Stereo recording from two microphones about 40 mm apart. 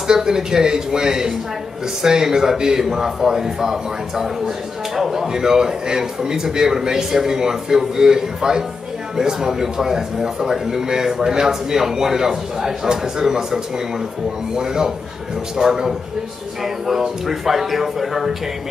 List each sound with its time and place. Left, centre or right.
0.1 s a man's voice: centre
4.9 s a man's voice: centre